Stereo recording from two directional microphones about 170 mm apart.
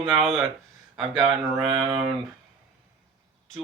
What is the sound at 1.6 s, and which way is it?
Speech, 30° right (ahead or behind).